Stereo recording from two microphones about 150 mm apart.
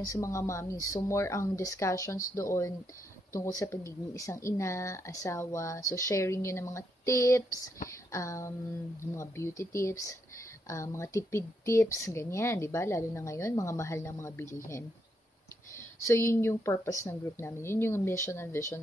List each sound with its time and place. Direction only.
0.0 s speech: 20° left (ahead or behind)
16.1 s speech: 15° left (ahead or behind)